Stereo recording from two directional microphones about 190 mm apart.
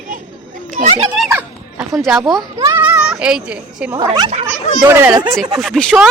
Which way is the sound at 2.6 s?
15° right (ahead or behind).